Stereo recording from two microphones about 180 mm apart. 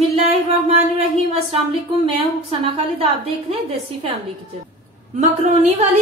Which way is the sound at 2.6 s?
35° right (ahead or behind).